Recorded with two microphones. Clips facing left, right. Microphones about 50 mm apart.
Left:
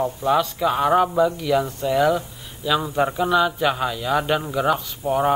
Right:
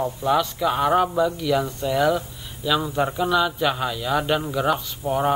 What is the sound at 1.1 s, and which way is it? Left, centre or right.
Speech, centre.